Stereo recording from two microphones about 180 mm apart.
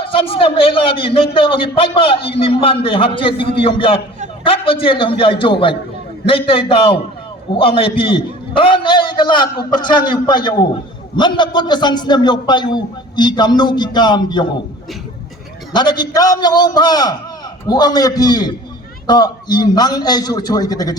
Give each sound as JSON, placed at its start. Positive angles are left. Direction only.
{"t": 0.0, "sound": "a man's voice", "side_deg": 30}
{"t": 15.7, "sound": "a man's voice", "side_deg": 25}